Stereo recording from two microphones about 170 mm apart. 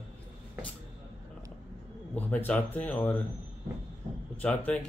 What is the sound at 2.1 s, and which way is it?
Speech, 10° left (ahead or behind).